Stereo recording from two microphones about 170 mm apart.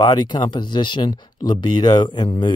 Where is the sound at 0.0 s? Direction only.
25° left (ahead or behind).